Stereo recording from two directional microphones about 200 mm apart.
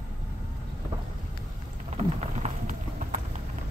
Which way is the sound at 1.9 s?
35° right (ahead or behind).